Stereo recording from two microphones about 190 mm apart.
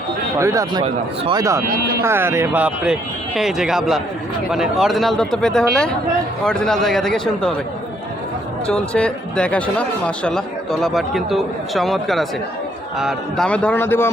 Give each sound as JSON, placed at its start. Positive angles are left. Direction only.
{"t": 0.3, "sound": "speech", "side_deg": -15}
{"t": 1.6, "sound": "speech", "side_deg": -45}
{"t": 2.0, "sound": "speech", "side_deg": -15}
{"t": 8.6, "sound": "speech", "side_deg": 5}